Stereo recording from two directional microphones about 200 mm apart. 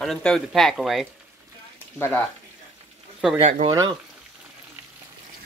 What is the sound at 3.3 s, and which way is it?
Speech, 30° right (ahead or behind).